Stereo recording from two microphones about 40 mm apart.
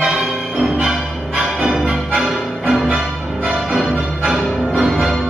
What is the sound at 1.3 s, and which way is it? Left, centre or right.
Music, centre.